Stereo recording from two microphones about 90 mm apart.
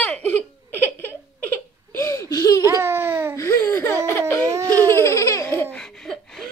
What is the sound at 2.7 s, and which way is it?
Baby cry, 30° right (ahead or behind).